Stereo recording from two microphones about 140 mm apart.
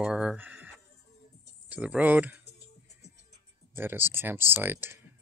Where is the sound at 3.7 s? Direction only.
15° right (ahead or behind).